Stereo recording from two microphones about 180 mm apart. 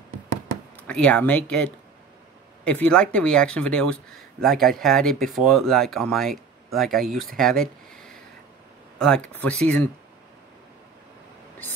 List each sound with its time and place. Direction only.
0.7 s speech: 5° left (ahead or behind)